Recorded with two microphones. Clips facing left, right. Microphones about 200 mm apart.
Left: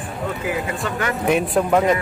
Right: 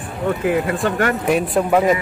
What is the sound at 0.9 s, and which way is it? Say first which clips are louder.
Speech: right 5 dB; 55° right (ahead or behind).